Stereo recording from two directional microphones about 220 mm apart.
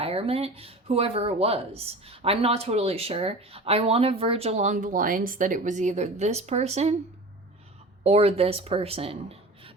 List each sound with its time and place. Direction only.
0.0 s speech: 25° right (ahead or behind)
8.0 s speech: 25° right (ahead or behind)